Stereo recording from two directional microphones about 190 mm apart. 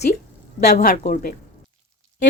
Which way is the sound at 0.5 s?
55° left (ahead or behind).